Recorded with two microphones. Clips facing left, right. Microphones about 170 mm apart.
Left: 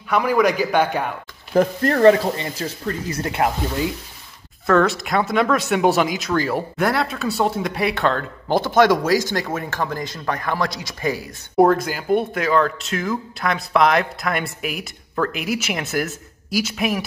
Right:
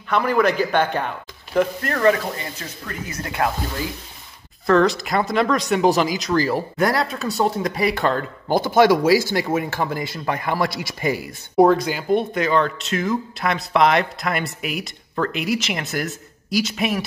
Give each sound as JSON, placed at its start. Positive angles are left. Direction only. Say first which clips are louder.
{"t": 0.1, "sound": "a man's voice", "louder": "left 1 dB", "side_deg": 10}
{"t": 1.5, "sound": "speech", "louder": "left 3 dB", "side_deg": 35}
{"t": 4.6, "sound": "a man's voice", "louder": "right 1 dB", "side_deg": 0}
{"t": 11.5, "sound": "speech", "louder": "right 1 dB", "side_deg": 0}